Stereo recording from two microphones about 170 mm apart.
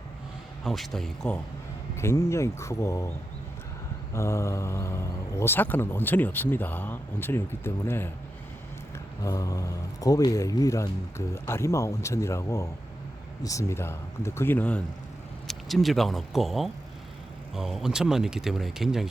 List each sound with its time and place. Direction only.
0.6 s speech: centre (ahead or behind)
2.0 s speech: 15° left (ahead or behind)
4.1 s speech: 15° left (ahead or behind)
9.2 s a man's voice: 20° left (ahead or behind)
15.4 s speech: centre (ahead or behind)